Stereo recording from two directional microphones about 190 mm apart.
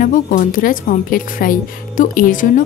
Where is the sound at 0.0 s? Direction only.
45° left (ahead or behind).